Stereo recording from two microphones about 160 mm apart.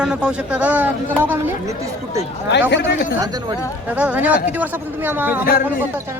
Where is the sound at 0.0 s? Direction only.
5° right (ahead or behind).